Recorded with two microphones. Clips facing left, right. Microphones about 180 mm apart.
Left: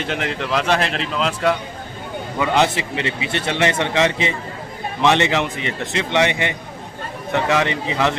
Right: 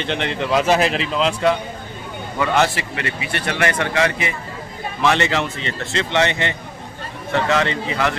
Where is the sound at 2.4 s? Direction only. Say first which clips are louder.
Even; 20° left (ahead or behind).